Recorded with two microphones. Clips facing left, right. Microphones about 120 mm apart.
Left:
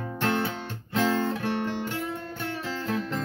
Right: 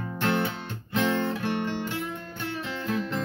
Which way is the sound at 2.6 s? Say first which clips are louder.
Even; 40° left (ahead or behind).